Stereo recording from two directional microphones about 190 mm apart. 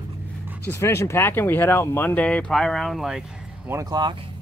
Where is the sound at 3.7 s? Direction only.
20° right (ahead or behind).